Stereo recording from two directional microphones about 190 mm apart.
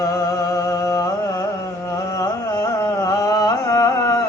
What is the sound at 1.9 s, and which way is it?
Carnatic music, 15° left (ahead or behind).